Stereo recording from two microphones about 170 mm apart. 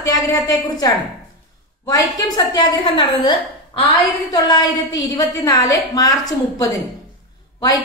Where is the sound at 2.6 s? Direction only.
25° left (ahead or behind).